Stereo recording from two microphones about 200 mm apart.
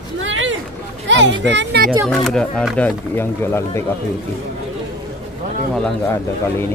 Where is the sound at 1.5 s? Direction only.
60° right (ahead or behind).